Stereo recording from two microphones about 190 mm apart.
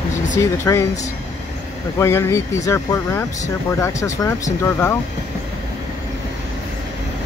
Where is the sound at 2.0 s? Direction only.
15° left (ahead or behind).